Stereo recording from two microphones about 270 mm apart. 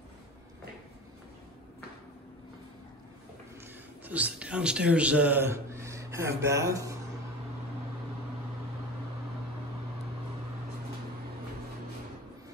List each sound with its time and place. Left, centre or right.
4.0 s speech: centre